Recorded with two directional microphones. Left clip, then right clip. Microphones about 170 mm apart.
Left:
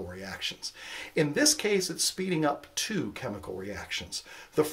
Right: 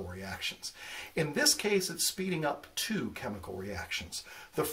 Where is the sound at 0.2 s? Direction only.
35° left (ahead or behind).